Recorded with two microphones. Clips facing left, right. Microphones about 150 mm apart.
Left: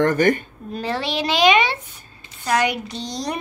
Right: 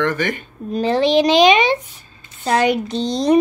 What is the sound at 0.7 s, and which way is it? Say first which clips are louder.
Speech: right 10 dB; 20° right (ahead or behind).